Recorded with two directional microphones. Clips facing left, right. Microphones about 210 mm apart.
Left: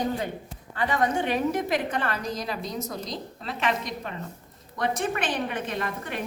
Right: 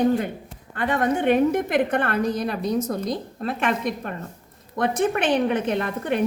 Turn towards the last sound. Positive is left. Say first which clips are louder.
# right 7 dB
turn(degrees=-60)  # may be behind; listen again after turning